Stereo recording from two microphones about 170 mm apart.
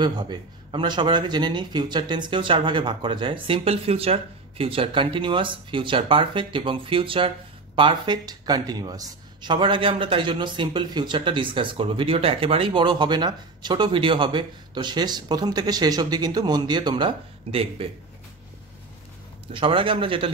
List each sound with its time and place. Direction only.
0.0 s speech: 25° right (ahead or behind)
19.5 s a man's voice: 30° right (ahead or behind)